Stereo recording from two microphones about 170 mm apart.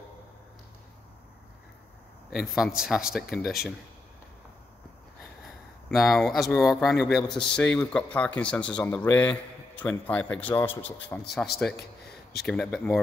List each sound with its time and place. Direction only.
2.3 s speech: 5° right (ahead or behind)
5.9 s a man's voice: centre (ahead or behind)
11.7 s a sound: 70° left (ahead or behind)
12.4 s speech: 5° left (ahead or behind)